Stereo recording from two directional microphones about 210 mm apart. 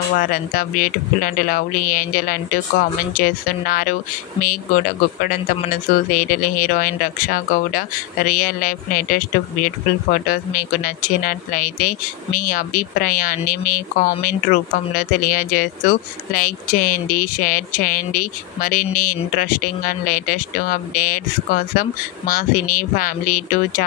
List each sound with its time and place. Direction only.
0.2 s speech: 40° left (ahead or behind)